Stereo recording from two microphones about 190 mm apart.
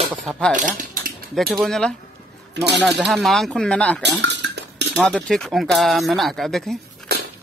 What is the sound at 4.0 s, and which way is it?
Dishes, 65° right (ahead or behind).